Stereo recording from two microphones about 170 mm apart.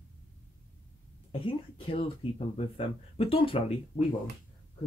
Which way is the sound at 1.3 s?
30° left (ahead or behind).